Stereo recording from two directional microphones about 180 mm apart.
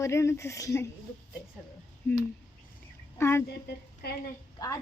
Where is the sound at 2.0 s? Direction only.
10° left (ahead or behind).